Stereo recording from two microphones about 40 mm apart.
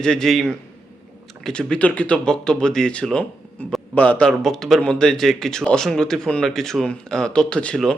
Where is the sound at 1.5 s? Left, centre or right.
Left.